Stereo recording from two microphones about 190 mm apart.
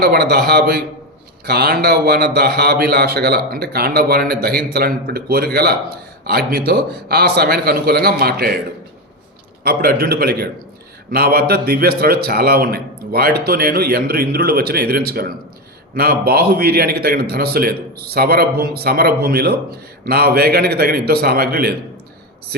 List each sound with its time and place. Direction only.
0.0 s a man's voice: 55° right (ahead or behind)
9.6 s a man's voice: 55° right (ahead or behind)